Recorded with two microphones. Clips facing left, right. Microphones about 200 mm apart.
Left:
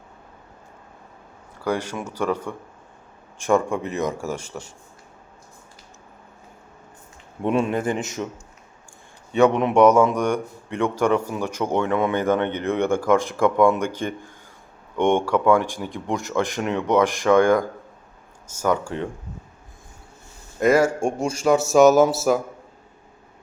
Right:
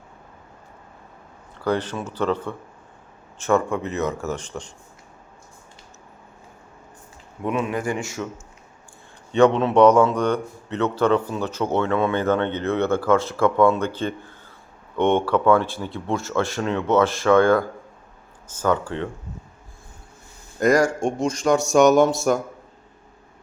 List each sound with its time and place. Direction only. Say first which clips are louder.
1.5 s a man's voice: right 2 dB; 10° left (ahead or behind)
7.4 s speech: left 3 dB; 30° left (ahead or behind)
9.3 s a man's voice: right 1 dB; 10° left (ahead or behind)
20.6 s speech: even; 5° left (ahead or behind)